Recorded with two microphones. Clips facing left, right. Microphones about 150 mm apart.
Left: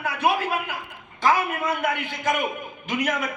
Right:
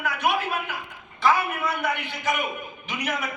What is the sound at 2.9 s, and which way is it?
Speech, 50° left (ahead or behind).